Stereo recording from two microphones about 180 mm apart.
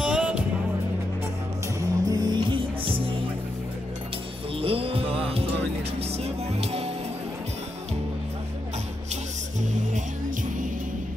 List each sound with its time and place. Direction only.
0.0 s music: 5° right (ahead or behind)
1.8 s music: 20° right (ahead or behind)
4.6 s music: 30° right (ahead or behind)
9.1 s music: 40° right (ahead or behind)